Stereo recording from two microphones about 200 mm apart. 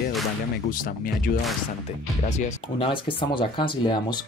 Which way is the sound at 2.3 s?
35° left (ahead or behind).